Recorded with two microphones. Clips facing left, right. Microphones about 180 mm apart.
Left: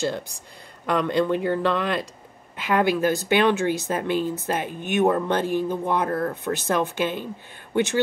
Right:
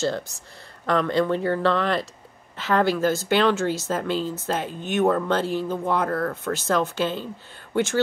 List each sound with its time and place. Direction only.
0.8 s speech: 15° left (ahead or behind)